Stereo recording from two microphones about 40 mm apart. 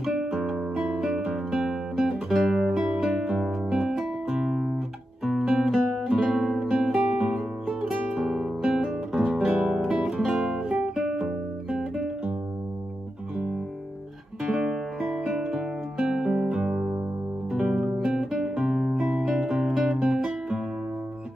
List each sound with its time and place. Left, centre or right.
0.0 s music: centre
0.4 s music: right
2.2 s guitar: centre
3.3 s music: centre
6.7 s music: centre
7.6 s music: centre
8.7 s guitar: centre
9.5 s music: right; by 10.6 s centre
11.1 s guitar: centre
15.0 s music: centre; by 16.8 s right
17.5 s music: centre
18.0 s guitar: centre